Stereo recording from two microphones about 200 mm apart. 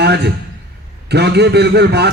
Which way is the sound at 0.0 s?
55° right (ahead or behind).